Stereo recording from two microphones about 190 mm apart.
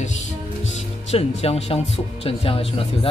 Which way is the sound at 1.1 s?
30° left (ahead or behind).